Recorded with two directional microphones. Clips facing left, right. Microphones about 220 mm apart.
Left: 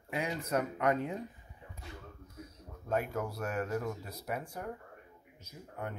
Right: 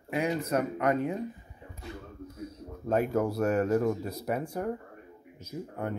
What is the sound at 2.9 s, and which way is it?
Speech, 40° right (ahead or behind).